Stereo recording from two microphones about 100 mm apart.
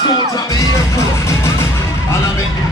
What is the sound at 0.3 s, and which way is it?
Music, 35° left (ahead or behind).